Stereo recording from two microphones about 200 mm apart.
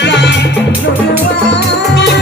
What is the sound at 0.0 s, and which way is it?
Music, 60° left (ahead or behind).